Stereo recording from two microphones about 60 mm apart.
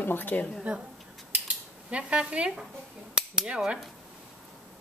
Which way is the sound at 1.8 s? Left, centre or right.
Centre.